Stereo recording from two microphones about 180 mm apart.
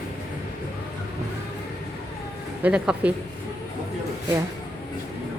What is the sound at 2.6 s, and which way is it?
Speech, 5° right (ahead or behind).